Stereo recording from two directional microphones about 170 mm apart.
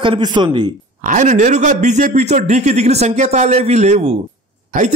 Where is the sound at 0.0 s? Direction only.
25° right (ahead or behind).